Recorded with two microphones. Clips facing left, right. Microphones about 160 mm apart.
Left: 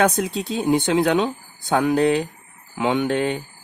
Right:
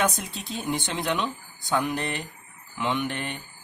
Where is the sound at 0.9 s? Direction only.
90° left.